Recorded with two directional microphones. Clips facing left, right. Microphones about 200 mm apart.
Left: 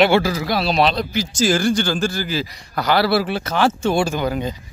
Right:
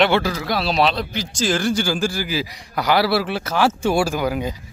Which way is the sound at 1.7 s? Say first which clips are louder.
Left 1 dB; 10° right (ahead or behind).